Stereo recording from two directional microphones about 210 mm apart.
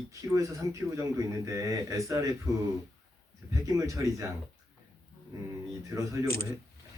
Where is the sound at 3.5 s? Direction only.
15° right (ahead or behind).